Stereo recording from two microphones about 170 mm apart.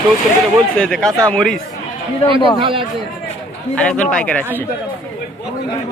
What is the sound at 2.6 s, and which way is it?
Speech, 30° right (ahead or behind).